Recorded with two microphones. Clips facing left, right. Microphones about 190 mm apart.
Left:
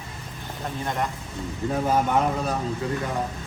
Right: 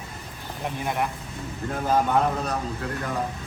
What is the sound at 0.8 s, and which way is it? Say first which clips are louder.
Speech: right 1 dB; 10° right (ahead or behind).